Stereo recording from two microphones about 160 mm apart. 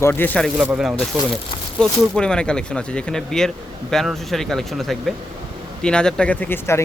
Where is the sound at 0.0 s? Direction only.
10° left (ahead or behind).